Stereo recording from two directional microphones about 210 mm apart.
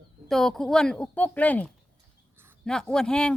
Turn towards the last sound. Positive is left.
turn(degrees=5)  # may be behind; listen again after turning